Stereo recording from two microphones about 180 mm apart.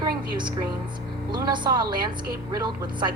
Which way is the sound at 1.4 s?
25° right (ahead or behind).